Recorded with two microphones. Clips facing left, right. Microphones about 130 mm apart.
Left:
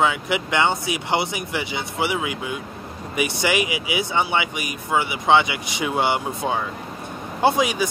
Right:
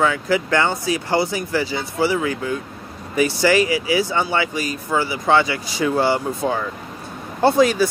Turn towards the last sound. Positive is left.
turn(degrees=15)  # may be behind; listen again after turning